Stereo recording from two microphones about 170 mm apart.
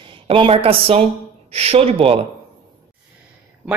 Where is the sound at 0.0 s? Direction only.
30° right (ahead or behind).